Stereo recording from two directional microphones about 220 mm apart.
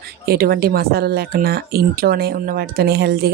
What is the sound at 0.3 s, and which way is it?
Speech, 45° right (ahead or behind).